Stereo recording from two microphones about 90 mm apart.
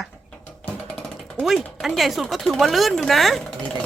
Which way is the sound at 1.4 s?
5° right (ahead or behind).